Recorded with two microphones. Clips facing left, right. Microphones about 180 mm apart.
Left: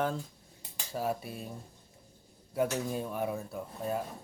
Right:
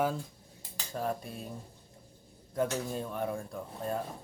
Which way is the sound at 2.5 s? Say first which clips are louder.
Left 1 dB; 10° left (ahead or behind).